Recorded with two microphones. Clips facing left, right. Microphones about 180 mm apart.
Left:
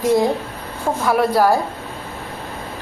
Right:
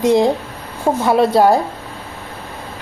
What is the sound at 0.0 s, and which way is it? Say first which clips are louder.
A woman's voice: right 3 dB; 20° right (ahead or behind).